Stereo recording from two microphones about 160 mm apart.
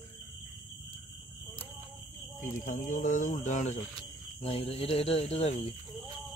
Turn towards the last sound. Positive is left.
turn(degrees=40)  # may be behind; listen again after turning